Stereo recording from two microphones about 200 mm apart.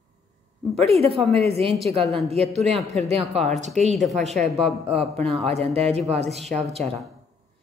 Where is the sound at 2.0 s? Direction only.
Centre (ahead or behind).